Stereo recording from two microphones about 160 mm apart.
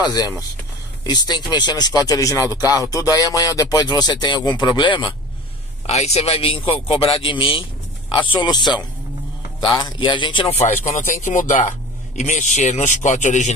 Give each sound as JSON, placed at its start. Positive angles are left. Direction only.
{"t": 0.0, "sound": "speech", "side_deg": 25}
{"t": 5.9, "sound": "a man's voice", "side_deg": 40}